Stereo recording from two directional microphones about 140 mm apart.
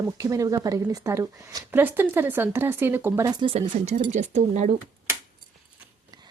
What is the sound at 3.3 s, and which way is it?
Speech, 35° right (ahead or behind).